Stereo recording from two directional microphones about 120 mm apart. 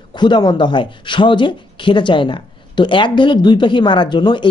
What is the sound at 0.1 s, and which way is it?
Speech, 40° left (ahead or behind).